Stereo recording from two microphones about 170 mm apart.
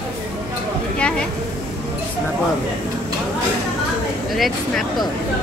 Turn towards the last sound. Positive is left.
turn(degrees=0)  # may be behind; listen again after turning